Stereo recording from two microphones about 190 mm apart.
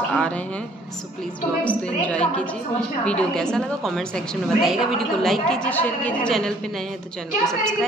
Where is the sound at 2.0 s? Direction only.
5° left (ahead or behind).